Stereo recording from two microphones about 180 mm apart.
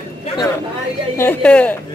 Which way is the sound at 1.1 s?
10° left (ahead or behind).